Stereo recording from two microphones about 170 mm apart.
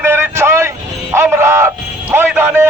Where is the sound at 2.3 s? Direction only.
10° right (ahead or behind).